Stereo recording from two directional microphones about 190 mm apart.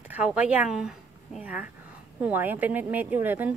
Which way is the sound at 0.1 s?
5° right (ahead or behind).